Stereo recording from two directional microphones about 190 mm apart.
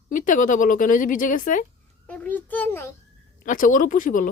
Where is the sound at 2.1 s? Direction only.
5° left (ahead or behind).